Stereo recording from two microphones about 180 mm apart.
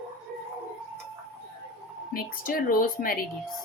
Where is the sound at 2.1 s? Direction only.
50° left (ahead or behind).